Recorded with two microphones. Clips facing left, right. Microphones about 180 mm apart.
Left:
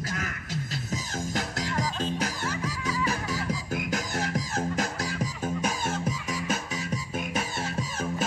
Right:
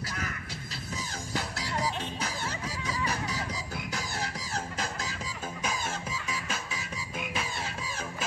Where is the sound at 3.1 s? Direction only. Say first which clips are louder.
Left 4 dB; 45° left (ahead or behind).